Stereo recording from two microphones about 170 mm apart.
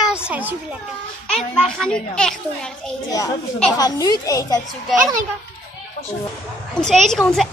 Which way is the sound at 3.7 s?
20° left (ahead or behind).